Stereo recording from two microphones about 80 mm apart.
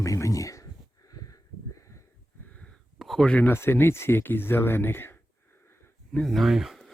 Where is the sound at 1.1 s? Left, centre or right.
Left.